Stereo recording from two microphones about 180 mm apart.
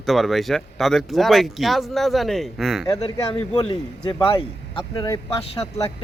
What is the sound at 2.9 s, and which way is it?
Speech, 20° left (ahead or behind).